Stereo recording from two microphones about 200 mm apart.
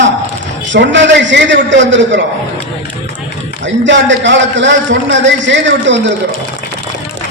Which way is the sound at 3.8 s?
65° right (ahead or behind).